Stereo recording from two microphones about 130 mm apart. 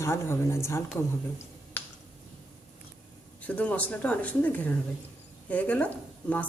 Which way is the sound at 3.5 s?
10° left (ahead or behind).